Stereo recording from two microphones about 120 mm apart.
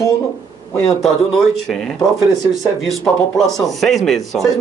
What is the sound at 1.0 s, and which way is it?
Speech, 5° left (ahead or behind).